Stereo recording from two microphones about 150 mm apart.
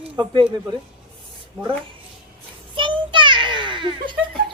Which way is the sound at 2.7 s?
35° right (ahead or behind).